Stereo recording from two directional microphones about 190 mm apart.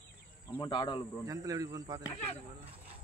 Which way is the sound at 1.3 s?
20° right (ahead or behind).